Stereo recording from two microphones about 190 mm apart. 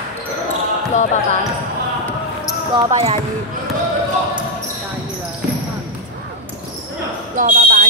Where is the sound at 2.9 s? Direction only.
30° right (ahead or behind).